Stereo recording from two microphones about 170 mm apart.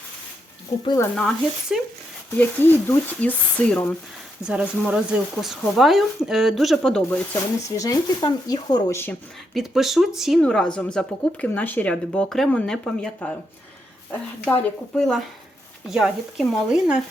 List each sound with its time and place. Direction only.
1.7 s speech: 5° right (ahead or behind)
2.4 s speech: 10° left (ahead or behind)
4.4 s speech: 5° right (ahead or behind)
7.7 s speech: 20° left (ahead or behind)
9.6 s speech: centre (ahead or behind)